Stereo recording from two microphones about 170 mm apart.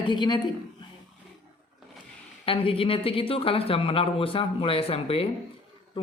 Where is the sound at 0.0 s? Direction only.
25° left (ahead or behind).